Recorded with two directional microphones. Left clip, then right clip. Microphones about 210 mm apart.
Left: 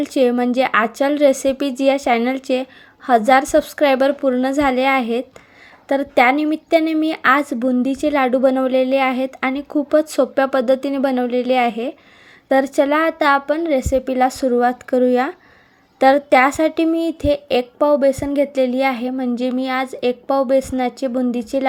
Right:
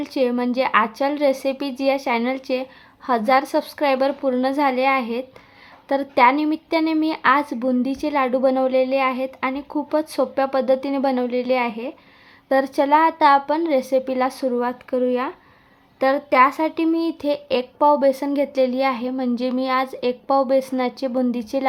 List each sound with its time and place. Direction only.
0.0 s a woman's voice: 15° left (ahead or behind)